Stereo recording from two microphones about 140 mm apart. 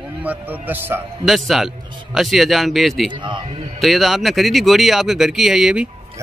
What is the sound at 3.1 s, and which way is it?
Speech, 35° right (ahead or behind).